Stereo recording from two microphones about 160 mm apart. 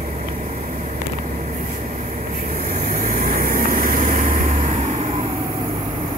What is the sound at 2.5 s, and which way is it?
Vehicle, 45° right (ahead or behind).